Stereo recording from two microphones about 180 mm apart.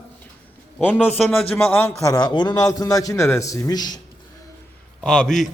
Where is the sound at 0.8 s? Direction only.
10° left (ahead or behind).